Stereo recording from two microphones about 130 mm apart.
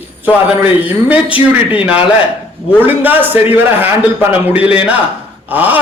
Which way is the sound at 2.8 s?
15° right (ahead or behind).